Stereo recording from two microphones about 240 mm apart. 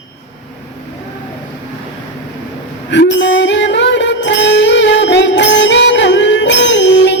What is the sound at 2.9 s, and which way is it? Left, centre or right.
Music, left.